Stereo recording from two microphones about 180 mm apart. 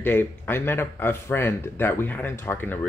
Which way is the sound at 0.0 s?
10° left (ahead or behind).